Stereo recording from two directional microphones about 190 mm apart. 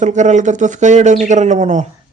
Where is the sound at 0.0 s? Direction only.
40° right (ahead or behind).